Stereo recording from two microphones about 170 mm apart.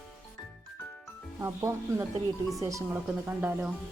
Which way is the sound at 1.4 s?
15° right (ahead or behind).